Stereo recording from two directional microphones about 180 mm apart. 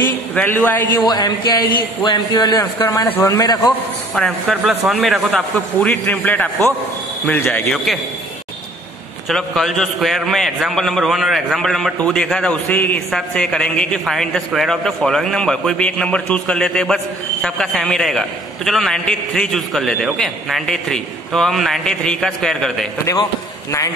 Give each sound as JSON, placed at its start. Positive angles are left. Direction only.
{"t": 0.6, "sound": "speech", "side_deg": 10}
{"t": 0.9, "sound": "a man's voice", "side_deg": 20}
{"t": 4.1, "sound": "a man's voice", "side_deg": 0}
{"t": 7.7, "sound": "a man's voice", "side_deg": 0}
{"t": 9.3, "sound": "a man's voice", "side_deg": 0}